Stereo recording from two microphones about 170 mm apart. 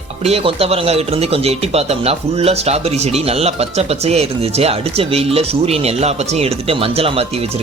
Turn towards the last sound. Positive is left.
turn(degrees=-35)  # may be behind; listen again after turning